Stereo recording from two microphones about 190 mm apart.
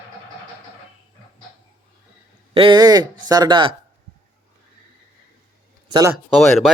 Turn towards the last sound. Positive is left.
turn(degrees=0)  # may be behind; listen again after turning